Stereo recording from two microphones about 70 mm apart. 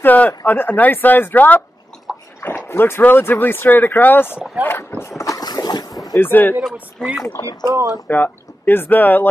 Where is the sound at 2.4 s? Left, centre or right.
Left.